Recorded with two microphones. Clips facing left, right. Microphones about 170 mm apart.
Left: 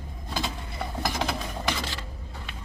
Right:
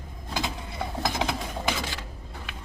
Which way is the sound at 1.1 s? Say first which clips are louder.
Even; 20° right (ahead or behind).